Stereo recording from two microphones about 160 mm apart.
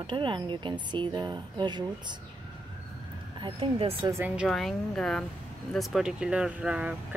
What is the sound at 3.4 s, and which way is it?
Speech, 35° right (ahead or behind).